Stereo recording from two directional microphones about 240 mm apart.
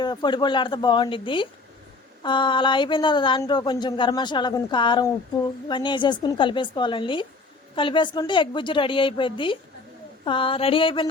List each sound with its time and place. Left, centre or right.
0.0 s a woman's voice: centre